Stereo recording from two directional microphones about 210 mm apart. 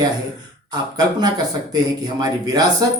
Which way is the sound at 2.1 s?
20° right (ahead or behind).